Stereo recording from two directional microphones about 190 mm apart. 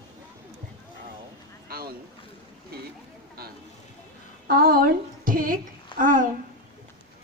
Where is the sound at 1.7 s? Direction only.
50° right (ahead or behind).